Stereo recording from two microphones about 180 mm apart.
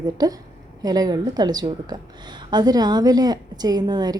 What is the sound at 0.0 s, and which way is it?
Speech, 20° right (ahead or behind).